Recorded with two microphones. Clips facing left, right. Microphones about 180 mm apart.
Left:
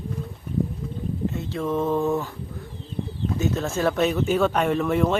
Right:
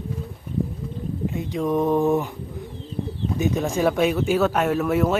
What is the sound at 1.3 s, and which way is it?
Speech, 15° right (ahead or behind).